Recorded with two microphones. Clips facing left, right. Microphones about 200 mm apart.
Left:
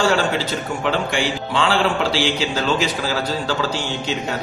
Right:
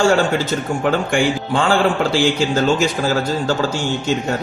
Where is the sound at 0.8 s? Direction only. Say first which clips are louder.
Right 4 dB; 50° right (ahead or behind).